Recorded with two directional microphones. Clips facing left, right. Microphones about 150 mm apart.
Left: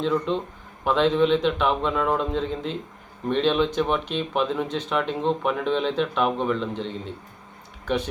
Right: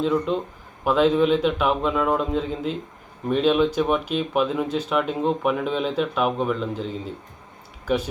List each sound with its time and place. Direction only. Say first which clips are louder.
0.0 s speech: right 2 dB; 5° right (ahead or behind)